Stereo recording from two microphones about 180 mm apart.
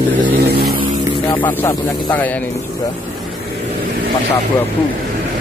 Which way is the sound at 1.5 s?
15° left (ahead or behind).